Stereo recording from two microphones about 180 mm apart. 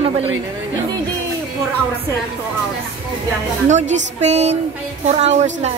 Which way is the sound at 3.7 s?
40° right (ahead or behind).